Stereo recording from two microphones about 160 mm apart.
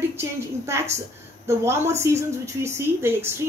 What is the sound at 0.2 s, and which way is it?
A woman's voice, 15° right (ahead or behind).